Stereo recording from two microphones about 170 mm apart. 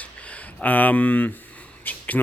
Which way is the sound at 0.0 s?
10° left (ahead or behind).